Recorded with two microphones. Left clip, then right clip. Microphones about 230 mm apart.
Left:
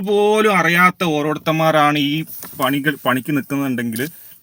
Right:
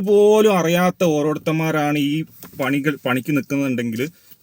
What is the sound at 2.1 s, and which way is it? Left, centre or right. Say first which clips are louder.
Speech: left 1 dB; left.